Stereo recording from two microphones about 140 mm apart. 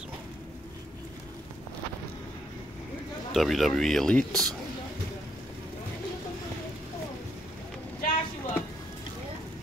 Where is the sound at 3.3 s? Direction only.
Centre (ahead or behind).